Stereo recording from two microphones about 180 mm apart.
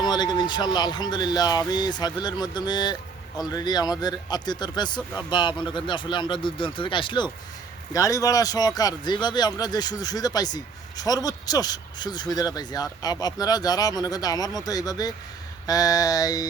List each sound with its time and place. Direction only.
0.0 s speech: 25° left (ahead or behind)